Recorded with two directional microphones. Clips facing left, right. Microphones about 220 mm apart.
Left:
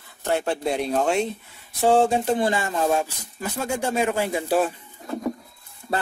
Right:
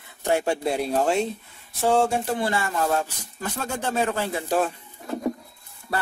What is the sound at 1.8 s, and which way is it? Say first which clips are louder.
Speech: left 3 dB; 15° left (ahead or behind).